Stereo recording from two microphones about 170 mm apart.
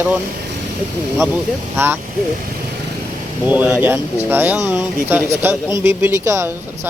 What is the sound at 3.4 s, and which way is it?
Speech, 10° right (ahead or behind).